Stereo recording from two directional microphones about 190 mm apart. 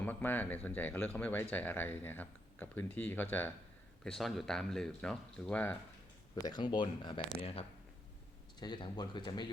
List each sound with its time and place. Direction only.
0.0 s speech: 10° left (ahead or behind)
6.3 s speech: 20° left (ahead or behind)
8.5 s speech: 20° left (ahead or behind)